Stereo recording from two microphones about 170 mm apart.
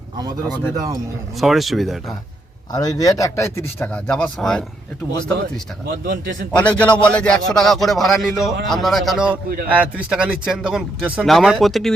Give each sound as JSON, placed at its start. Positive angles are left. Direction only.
{"t": 0.2, "sound": "speech", "side_deg": -25}
{"t": 1.4, "sound": "speech", "side_deg": 0}
{"t": 2.7, "sound": "speech", "side_deg": 20}
{"t": 5.9, "sound": "a man's voice", "side_deg": -90}
{"t": 6.5, "sound": "speech", "side_deg": 5}